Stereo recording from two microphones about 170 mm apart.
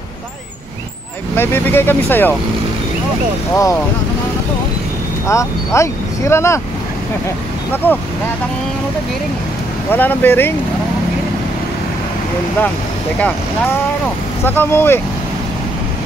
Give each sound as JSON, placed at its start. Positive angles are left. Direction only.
{"t": 1.3, "sound": "speech", "side_deg": 10}
{"t": 3.5, "sound": "speech", "side_deg": 20}
{"t": 5.2, "sound": "speech", "side_deg": 15}
{"t": 7.7, "sound": "speech", "side_deg": 10}
{"t": 9.8, "sound": "speech", "side_deg": 10}
{"t": 14.4, "sound": "speech", "side_deg": 15}